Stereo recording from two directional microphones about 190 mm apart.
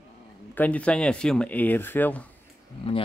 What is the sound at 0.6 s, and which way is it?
Speech, 5° left (ahead or behind).